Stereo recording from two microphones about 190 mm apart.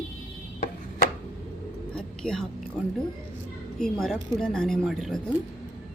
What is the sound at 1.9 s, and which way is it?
Speech, 5° left (ahead or behind).